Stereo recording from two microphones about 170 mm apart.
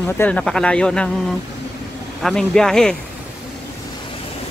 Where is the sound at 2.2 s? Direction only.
5° left (ahead or behind).